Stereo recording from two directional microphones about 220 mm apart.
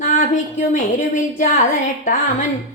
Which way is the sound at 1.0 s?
35° left (ahead or behind).